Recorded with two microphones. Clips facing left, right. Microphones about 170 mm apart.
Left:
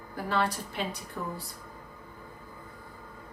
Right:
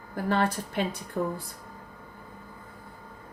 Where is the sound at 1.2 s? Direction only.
45° right (ahead or behind).